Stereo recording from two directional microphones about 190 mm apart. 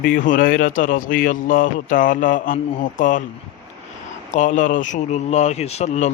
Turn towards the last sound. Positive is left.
turn(degrees=35)  # may be behind; listen again after turning